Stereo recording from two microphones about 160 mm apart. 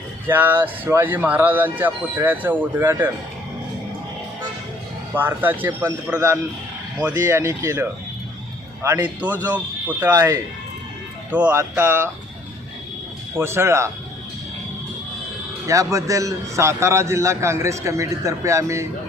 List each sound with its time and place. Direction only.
0.3 s speech: 10° right (ahead or behind)
5.1 s speech: 10° right (ahead or behind)
10.1 s a man's voice: 20° right (ahead or behind)
11.3 s speech: 10° right (ahead or behind)
13.3 s speech: 15° right (ahead or behind)
15.6 s a man's voice: 20° right (ahead or behind)